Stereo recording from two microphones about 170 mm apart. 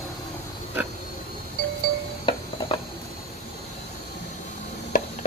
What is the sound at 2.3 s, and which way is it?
Music, 30° left (ahead or behind).